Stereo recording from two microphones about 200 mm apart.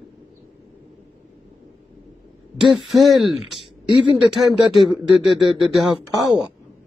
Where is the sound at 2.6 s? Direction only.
Centre (ahead or behind).